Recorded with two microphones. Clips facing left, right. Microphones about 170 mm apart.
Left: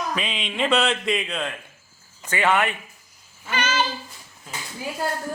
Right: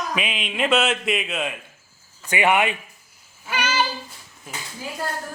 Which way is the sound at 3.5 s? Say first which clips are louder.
Even; 10° right (ahead or behind).